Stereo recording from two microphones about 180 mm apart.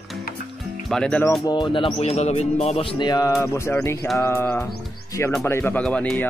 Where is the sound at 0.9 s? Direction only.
5° left (ahead or behind).